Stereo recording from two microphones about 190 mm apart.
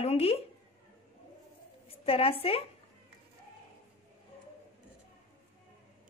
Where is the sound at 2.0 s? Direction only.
30° left (ahead or behind).